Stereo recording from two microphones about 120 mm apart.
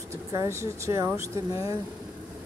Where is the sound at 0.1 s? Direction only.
25° right (ahead or behind).